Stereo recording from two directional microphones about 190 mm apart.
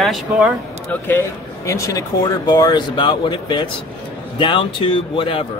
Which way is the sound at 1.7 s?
20° left (ahead or behind).